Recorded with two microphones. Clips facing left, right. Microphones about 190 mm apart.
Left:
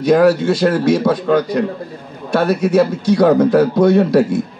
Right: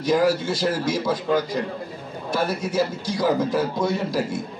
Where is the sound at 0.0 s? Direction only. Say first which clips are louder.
Left 8 dB; 70° left (ahead or behind).